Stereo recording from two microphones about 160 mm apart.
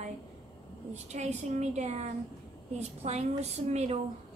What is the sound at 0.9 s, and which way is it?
A woman's voice, 45° right (ahead or behind).